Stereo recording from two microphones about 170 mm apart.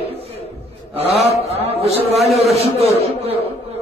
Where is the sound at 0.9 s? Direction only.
35° right (ahead or behind).